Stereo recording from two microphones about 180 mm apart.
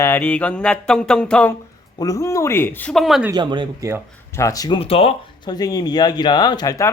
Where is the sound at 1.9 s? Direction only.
20° left (ahead or behind); by 3.3 s centre (ahead or behind).